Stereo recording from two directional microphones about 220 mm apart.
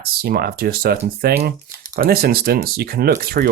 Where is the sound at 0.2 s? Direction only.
45° right (ahead or behind).